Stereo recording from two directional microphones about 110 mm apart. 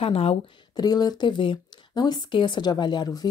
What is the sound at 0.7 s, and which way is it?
Speech, 35° left (ahead or behind).